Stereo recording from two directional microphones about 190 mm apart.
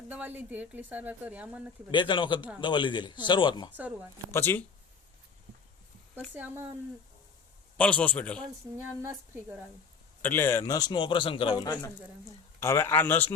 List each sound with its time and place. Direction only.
0.1 s speech: 10° right (ahead or behind)
1.9 s a man's voice: 25° left (ahead or behind)
4.3 s speech: 10° left (ahead or behind)
6.3 s speech: 10° right (ahead or behind)
7.8 s speech: 5° left (ahead or behind)
8.7 s a sound: 20° right (ahead or behind)
9.0 s speech: 10° right (ahead or behind)
10.2 s a man's voice: 10° left (ahead or behind)